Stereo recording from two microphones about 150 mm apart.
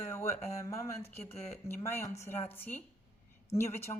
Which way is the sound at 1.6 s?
15° left (ahead or behind).